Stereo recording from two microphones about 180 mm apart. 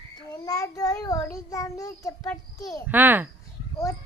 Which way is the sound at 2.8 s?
10° right (ahead or behind).